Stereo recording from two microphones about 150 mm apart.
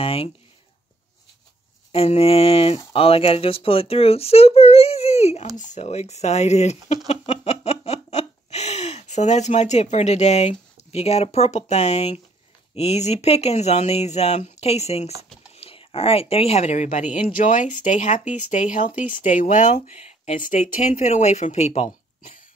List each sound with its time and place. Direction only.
0.0 s a child's voice: 40° left (ahead or behind)
1.9 s a child's voice: 40° left (ahead or behind)
7.1 s laughter: 45° left (ahead or behind)
12.7 s speech: 45° left (ahead or behind)
20.3 s speech: 65° left (ahead or behind)